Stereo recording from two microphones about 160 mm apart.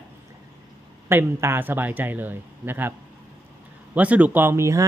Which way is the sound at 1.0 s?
15° right (ahead or behind).